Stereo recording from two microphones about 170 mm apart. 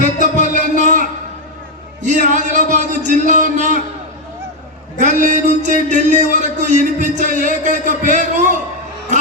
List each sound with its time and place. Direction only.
0.2 s music: 50° right (ahead or behind)
2.2 s speech: 50° right (ahead or behind)
4.9 s speech: 50° right (ahead or behind)